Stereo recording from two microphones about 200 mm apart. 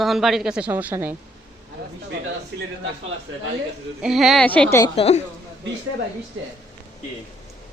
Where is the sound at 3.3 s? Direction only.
75° right (ahead or behind).